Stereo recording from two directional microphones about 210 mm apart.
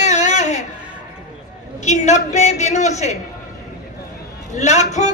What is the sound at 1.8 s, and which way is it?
Speech, 35° left (ahead or behind).